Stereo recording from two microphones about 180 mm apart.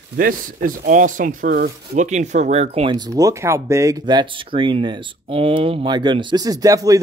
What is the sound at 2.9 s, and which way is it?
Speech, 20° right (ahead or behind).